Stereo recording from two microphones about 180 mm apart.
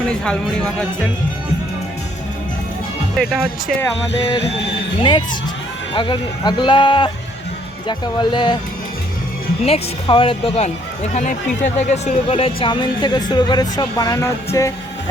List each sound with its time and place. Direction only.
0.1 s speech: 5° left (ahead or behind)
3.2 s speech: 5° right (ahead or behind)
5.0 s speech: 25° left (ahead or behind)
9.6 s speech: 30° left (ahead or behind)